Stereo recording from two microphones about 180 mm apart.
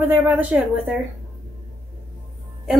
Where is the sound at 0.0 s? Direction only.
10° right (ahead or behind).